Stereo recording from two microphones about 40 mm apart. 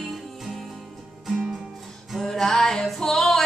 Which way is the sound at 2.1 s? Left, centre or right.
Centre.